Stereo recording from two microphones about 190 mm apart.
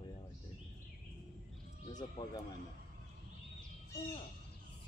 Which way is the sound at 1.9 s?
20° left (ahead or behind).